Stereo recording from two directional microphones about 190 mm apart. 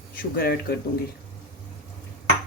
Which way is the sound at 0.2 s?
50° left (ahead or behind).